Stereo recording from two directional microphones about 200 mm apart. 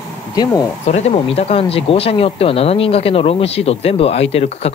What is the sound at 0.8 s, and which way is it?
Speech, 30° left (ahead or behind).